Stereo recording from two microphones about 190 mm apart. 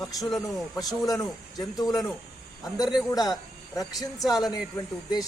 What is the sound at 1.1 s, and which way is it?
Speech, 20° left (ahead or behind).